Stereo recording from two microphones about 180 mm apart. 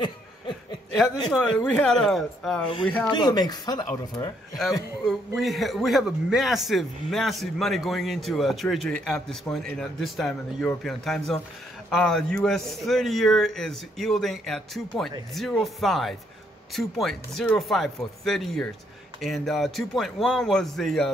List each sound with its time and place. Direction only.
0.0 s chuckle: 25° left (ahead or behind)
1.6 s a man's voice: 10° left (ahead or behind)
3.1 s speech: 25° left (ahead or behind)
5.0 s a man's voice: centre (ahead or behind)